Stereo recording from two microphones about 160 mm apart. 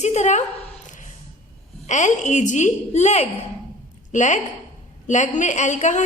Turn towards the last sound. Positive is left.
turn(degrees=50)  # may be behind; listen again after turning